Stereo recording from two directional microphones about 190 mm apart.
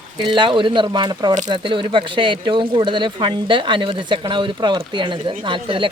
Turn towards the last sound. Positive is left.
turn(degrees=-25)  # may be behind; listen again after turning